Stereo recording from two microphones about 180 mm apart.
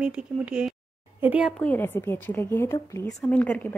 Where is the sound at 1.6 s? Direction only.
10° left (ahead or behind).